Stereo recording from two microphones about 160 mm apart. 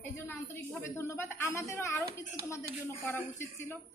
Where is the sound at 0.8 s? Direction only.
15° left (ahead or behind).